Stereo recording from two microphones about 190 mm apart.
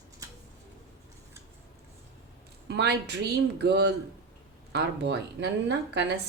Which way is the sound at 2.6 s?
60° right (ahead or behind).